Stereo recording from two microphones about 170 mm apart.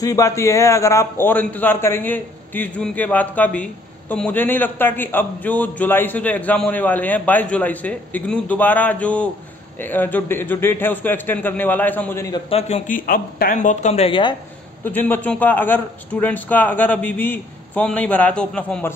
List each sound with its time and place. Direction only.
0.0 s a man's voice: 20° left (ahead or behind)
12.4 s speech: 40° left (ahead or behind)
14.9 s a man's voice: 10° left (ahead or behind)